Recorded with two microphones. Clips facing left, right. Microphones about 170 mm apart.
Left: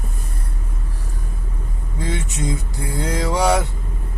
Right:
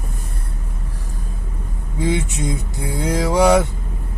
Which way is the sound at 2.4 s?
20° right (ahead or behind).